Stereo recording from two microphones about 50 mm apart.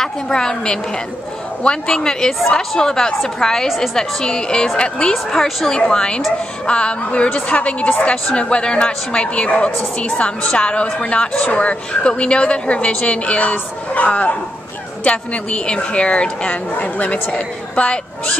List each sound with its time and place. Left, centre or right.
0.0 s a woman's voice: centre
4.2 s a woman's voice: centre
5.1 s a woman's voice: centre
5.8 s a woman's voice: centre